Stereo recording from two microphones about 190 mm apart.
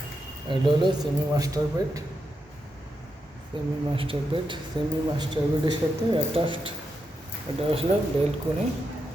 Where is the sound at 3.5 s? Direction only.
25° right (ahead or behind).